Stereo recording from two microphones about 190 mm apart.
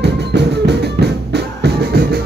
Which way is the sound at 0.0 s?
60° right (ahead or behind).